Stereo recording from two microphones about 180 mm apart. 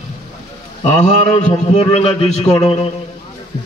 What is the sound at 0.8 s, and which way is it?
A man's voice, 35° left (ahead or behind).